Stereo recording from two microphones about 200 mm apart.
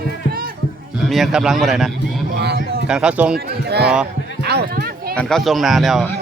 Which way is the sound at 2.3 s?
55° right (ahead or behind).